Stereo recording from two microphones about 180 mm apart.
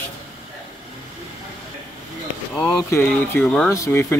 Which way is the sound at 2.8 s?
15° left (ahead or behind).